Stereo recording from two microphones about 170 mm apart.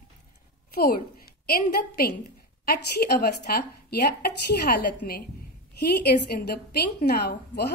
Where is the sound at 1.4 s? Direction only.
60° left (ahead or behind).